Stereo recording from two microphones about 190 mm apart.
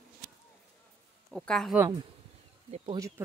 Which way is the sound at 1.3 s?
Centre (ahead or behind).